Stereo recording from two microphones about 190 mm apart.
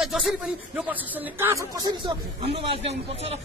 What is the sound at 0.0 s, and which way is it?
Speech, centre (ahead or behind).